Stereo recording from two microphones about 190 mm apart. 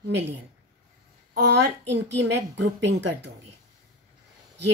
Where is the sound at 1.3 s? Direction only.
65° right (ahead or behind).